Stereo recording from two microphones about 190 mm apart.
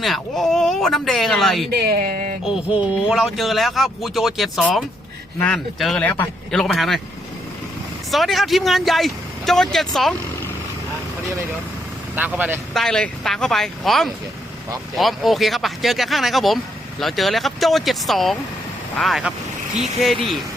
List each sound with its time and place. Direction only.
0.0 s speech: centre (ahead or behind)
1.7 s speech: 55° right (ahead or behind)
3.1 s speech: centre (ahead or behind)
8.1 s speech: centre (ahead or behind)
12.1 s speech: 5° right (ahead or behind)